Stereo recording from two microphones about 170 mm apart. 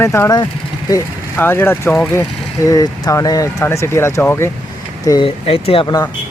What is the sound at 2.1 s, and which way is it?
Speech, 20° left (ahead or behind).